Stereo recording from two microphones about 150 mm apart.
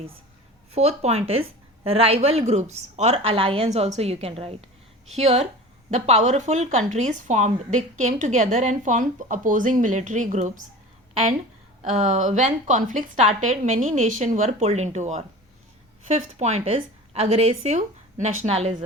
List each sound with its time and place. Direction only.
0.7 s speech: 45° right (ahead or behind)
11.8 s speech: 55° right (ahead or behind)